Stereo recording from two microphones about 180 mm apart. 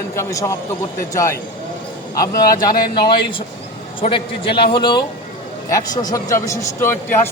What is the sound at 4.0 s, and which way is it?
A man's voice, 30° left (ahead or behind).